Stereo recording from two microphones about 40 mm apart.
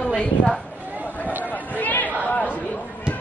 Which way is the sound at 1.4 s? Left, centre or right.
Left.